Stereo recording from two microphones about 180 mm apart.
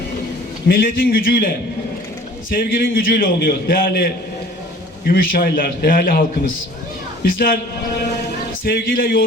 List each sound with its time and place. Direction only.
0.7 s a man's voice: 55° left (ahead or behind)
2.5 s a man's voice: 55° left (ahead or behind)
7.3 s a man's voice: 55° left (ahead or behind)
8.6 s a man's voice: 55° left (ahead or behind)